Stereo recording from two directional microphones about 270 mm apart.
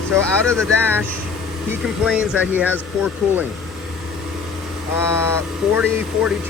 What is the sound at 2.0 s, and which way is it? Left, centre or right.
Speech, centre.